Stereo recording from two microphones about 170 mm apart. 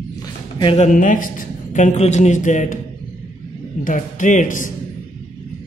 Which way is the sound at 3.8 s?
50° left (ahead or behind).